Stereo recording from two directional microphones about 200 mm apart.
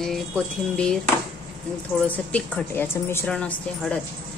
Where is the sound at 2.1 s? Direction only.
5° left (ahead or behind).